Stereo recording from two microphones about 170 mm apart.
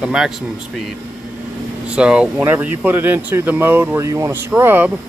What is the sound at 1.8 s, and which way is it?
Speech, 5° right (ahead or behind).